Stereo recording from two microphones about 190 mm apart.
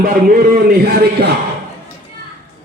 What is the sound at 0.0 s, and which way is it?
A man's voice, 50° right (ahead or behind).